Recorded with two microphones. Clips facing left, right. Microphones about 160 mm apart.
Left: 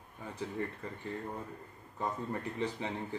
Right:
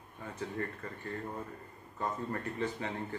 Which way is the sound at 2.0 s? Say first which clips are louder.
Even; 10° left (ahead or behind).